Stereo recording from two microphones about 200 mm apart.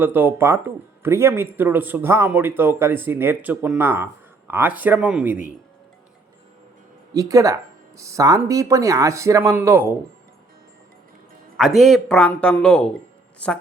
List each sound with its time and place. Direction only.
0.0 s speech: 10° right (ahead or behind)
7.1 s speech: 15° right (ahead or behind)
11.5 s speech: centre (ahead or behind)